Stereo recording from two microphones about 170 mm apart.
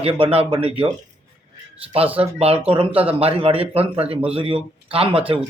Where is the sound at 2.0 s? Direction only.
10° right (ahead or behind).